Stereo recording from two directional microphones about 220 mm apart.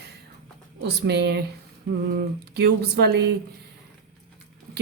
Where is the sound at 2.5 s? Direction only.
45° right (ahead or behind).